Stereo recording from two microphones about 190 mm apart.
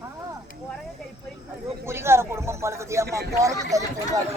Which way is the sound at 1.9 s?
15° right (ahead or behind).